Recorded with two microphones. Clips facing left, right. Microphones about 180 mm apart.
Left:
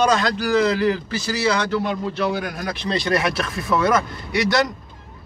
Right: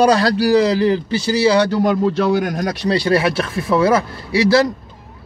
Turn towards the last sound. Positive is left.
turn(degrees=-30)  # may be behind; listen again after turning